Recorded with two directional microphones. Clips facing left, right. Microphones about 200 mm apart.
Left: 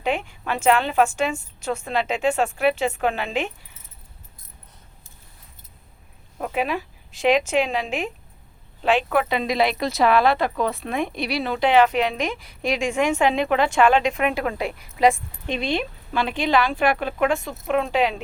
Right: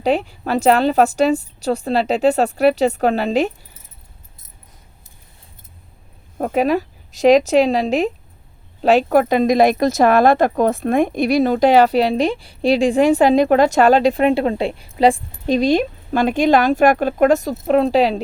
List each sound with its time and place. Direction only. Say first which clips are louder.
0.0 s speech: right 7 dB; 35° right (ahead or behind)
6.4 s speech: right 8 dB; 40° right (ahead or behind)